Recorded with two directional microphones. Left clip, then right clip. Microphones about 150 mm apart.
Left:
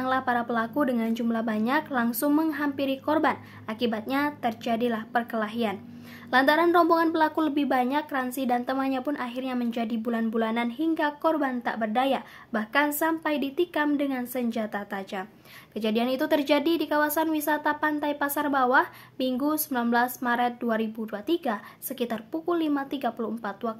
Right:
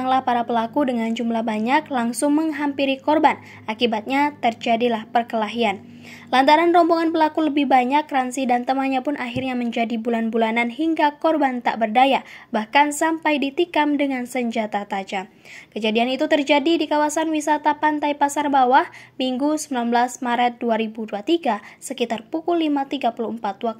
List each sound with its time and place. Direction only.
0.0 s a woman's voice: 15° right (ahead or behind)